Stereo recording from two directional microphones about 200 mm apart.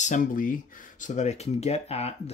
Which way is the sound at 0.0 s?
40° left (ahead or behind).